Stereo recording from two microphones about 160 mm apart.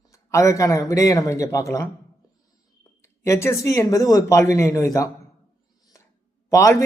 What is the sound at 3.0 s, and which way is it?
A man's voice, 15° left (ahead or behind).